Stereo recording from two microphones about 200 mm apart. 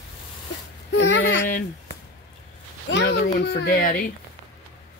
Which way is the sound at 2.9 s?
65° left (ahead or behind).